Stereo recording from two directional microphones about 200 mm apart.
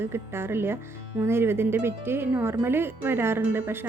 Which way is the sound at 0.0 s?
10° right (ahead or behind).